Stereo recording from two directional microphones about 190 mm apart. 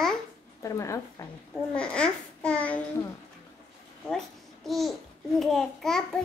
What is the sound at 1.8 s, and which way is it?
Babbling, 5° left (ahead or behind).